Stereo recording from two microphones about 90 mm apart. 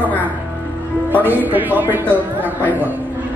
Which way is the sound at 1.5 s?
20° right (ahead or behind).